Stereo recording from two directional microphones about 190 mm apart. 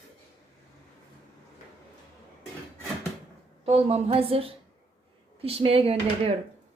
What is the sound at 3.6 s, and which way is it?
A woman's voice, 35° right (ahead or behind).